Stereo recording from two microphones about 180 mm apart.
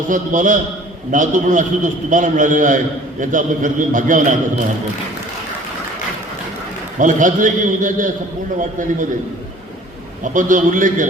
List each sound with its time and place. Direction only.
0.1 s a man's voice: 45° right (ahead or behind)
7.0 s a man's voice: 45° right (ahead or behind)
10.3 s a man's voice: 45° right (ahead or behind)